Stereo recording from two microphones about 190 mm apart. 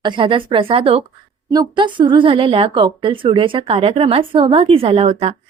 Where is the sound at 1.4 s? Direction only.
20° right (ahead or behind).